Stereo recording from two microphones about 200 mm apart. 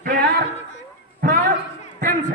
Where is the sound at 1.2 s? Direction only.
50° right (ahead or behind).